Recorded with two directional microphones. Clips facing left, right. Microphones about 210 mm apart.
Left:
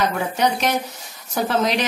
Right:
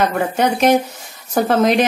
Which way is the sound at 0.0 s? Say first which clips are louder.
Right 4 dB; 50° right (ahead or behind).